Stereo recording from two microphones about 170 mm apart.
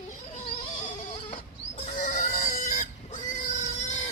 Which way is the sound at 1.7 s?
40° left (ahead or behind).